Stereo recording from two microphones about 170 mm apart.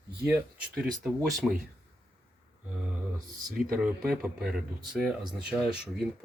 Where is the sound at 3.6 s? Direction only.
5° right (ahead or behind).